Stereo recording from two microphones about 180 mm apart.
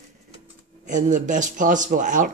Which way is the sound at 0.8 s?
45° right (ahead or behind).